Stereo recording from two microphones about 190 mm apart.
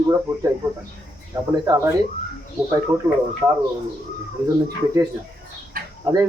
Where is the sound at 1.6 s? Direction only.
15° right (ahead or behind).